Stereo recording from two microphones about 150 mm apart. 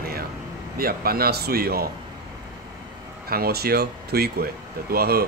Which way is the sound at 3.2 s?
90° right.